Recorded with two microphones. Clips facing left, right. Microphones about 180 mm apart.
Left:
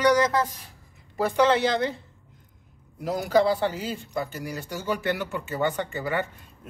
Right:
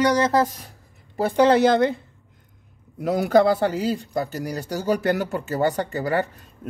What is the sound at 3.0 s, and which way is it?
Speech, 60° right (ahead or behind).